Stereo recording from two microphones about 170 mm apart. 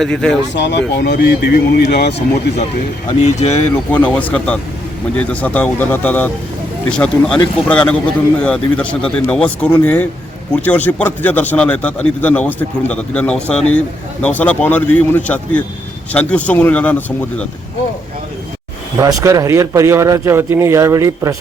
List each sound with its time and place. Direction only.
0.0 s speech: 5° left (ahead or behind)
0.5 s speech: 90° left; by 2.2 s 75° left (ahead or behind)
3.1 s speech: 40° left (ahead or behind)
3.9 s speech: 10° left (ahead or behind)
18.9 s a man's voice: 20° right (ahead or behind)